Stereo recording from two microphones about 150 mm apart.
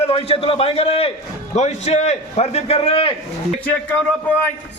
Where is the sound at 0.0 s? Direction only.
40° left (ahead or behind).